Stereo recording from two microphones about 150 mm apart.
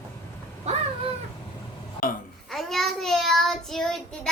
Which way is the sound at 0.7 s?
45° right (ahead or behind).